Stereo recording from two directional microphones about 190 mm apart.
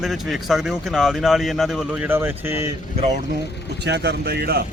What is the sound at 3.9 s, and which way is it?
Speech, 65° right (ahead or behind).